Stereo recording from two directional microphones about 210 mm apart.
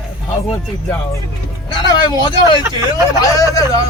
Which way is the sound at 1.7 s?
20° left (ahead or behind).